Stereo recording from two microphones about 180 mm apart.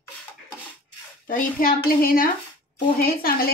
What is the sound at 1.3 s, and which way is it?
A woman's voice, 50° left (ahead or behind).